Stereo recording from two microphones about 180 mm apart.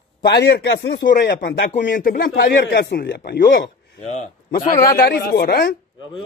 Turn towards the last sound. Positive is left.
turn(degrees=55)  # may be behind; listen again after turning